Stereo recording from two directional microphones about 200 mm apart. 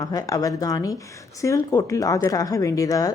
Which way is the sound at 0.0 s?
20° left (ahead or behind).